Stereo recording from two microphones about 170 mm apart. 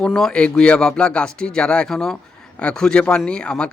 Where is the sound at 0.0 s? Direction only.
5° left (ahead or behind).